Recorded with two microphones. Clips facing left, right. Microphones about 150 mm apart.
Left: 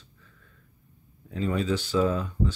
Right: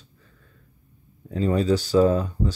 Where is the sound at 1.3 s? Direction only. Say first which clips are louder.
Right 6 dB; 35° right (ahead or behind).